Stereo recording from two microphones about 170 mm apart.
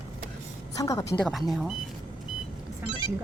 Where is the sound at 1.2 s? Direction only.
Centre (ahead or behind).